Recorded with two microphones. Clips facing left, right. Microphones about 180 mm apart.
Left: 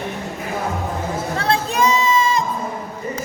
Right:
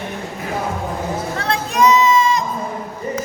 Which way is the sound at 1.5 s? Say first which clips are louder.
Right 3 dB; 30° left (ahead or behind).